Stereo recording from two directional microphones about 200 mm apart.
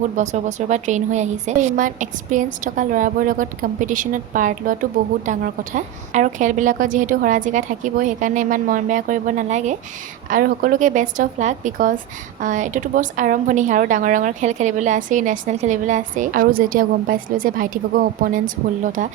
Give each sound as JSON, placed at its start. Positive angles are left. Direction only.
{"t": 0.2, "sound": "a woman's voice", "side_deg": -35}